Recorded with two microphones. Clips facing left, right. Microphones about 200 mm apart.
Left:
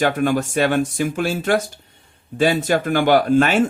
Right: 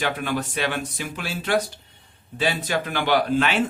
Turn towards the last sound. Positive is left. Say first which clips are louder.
# left 6 dB
turn(degrees=45)  # may be behind; listen again after turning